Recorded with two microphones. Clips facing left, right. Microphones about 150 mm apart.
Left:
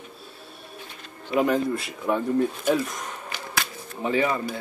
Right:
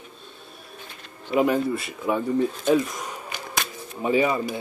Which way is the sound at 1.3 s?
5° right (ahead or behind).